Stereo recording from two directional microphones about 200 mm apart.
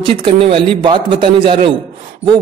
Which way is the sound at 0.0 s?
25° right (ahead or behind).